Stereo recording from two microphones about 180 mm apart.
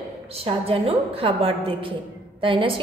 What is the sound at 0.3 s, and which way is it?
A woman's voice, 30° right (ahead or behind).